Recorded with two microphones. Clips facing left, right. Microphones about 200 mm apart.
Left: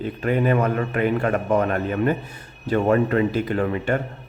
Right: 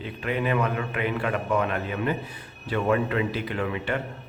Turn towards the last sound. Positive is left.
turn(degrees=45)  # may be behind; listen again after turning